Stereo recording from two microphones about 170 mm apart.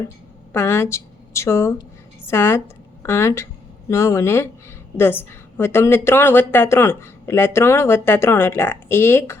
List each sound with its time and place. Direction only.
0.5 s a woman's voice: 15° left (ahead or behind)